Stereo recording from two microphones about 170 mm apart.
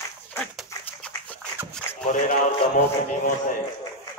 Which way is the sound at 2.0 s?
50° left (ahead or behind).